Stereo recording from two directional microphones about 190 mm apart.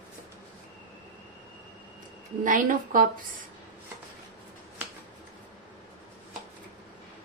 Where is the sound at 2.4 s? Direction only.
45° right (ahead or behind).